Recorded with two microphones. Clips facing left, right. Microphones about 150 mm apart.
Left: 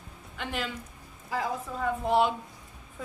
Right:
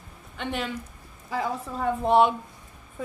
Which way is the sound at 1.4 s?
65° right (ahead or behind).